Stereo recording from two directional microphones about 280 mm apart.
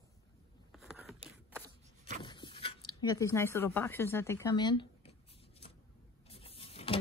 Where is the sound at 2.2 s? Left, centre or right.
Centre.